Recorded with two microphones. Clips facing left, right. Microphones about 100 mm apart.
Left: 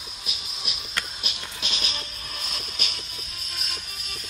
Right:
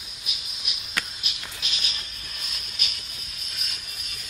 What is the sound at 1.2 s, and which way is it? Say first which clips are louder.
Music: left 3 dB; 30° left (ahead or behind).